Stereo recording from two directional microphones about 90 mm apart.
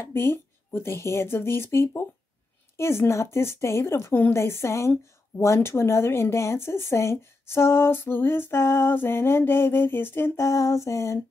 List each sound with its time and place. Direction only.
0.0 s a woman's voice: 25° left (ahead or behind)